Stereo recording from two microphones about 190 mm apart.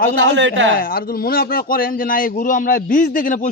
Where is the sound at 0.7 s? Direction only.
50° left (ahead or behind).